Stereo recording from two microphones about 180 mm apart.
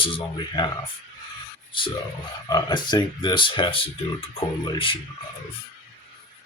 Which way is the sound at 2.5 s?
20° left (ahead or behind).